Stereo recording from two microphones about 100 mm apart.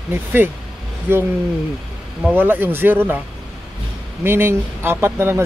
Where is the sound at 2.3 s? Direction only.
20° right (ahead or behind).